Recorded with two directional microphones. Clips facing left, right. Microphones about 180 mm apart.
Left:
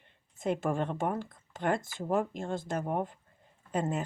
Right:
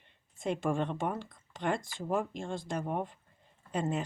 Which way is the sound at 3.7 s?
50° left (ahead or behind).